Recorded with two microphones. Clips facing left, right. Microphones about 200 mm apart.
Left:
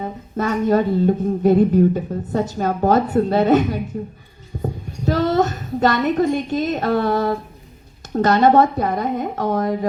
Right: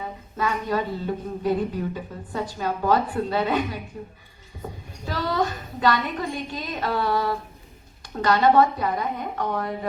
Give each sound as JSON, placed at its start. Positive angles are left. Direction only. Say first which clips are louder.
{"t": 0.0, "sound": "speech", "louder": "left 5 dB", "side_deg": 45}